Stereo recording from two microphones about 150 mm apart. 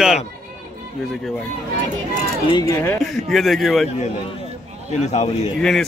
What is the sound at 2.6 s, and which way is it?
Speech, 20° left (ahead or behind).